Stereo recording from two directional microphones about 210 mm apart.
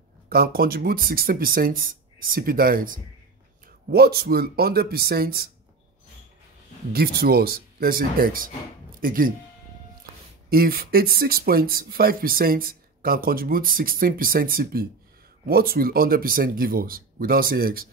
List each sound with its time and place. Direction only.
0.3 s speech: 45° right (ahead or behind)
6.9 s speech: 45° right (ahead or behind)
10.5 s speech: 45° right (ahead or behind)